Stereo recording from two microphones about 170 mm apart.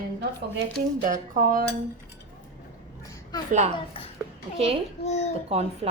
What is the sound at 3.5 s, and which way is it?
Speech, 45° right (ahead or behind).